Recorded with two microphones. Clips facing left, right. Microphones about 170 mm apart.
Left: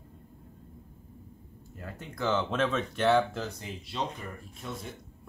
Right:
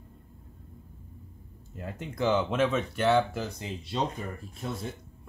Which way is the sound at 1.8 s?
20° right (ahead or behind).